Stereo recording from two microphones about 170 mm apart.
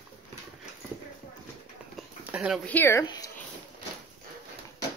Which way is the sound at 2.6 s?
10° left (ahead or behind).